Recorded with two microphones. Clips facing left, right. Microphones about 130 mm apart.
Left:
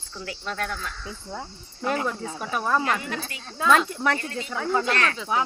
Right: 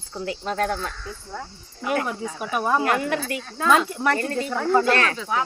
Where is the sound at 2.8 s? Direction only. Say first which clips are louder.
Right 5 dB; 55° right (ahead or behind).